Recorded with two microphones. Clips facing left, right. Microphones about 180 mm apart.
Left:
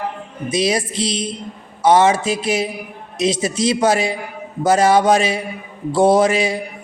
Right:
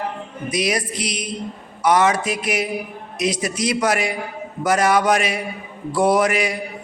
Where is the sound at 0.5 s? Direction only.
25° left (ahead or behind).